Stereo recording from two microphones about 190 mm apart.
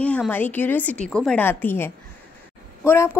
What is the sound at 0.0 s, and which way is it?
A woman's voice, 5° left (ahead or behind).